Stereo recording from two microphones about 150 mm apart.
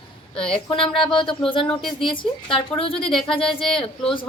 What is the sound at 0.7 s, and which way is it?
A woman's voice, 35° left (ahead or behind).